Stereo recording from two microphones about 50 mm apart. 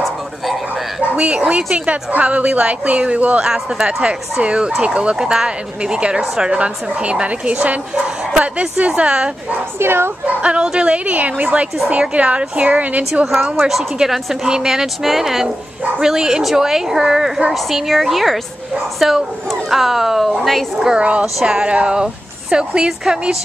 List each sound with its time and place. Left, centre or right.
1.1 s a woman's voice: right
3.4 s a woman's voice: centre
9.8 s speech: right
10.2 s a woman's voice: right
13.1 s a woman's voice: centre
21.0 s a woman's voice: right